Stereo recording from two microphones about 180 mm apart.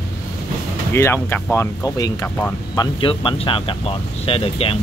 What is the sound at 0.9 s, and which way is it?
Speech, 15° left (ahead or behind).